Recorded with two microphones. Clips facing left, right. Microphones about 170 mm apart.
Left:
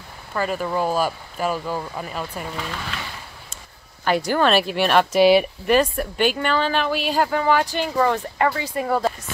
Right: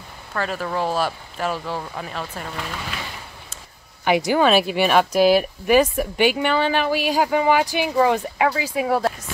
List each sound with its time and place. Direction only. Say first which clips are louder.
0.3 s speech: left 2 dB; 5° left (ahead or behind)
4.3 s speech: right 1 dB; 10° right (ahead or behind)